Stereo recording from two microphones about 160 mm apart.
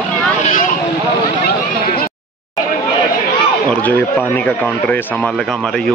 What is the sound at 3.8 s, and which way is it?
Speech, 10° left (ahead or behind).